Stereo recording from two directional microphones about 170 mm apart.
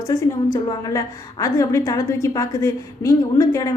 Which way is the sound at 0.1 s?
20° left (ahead or behind).